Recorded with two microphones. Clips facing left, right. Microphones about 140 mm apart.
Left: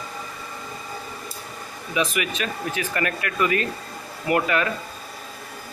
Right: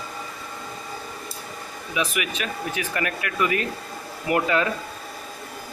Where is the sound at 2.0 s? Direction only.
10° right (ahead or behind).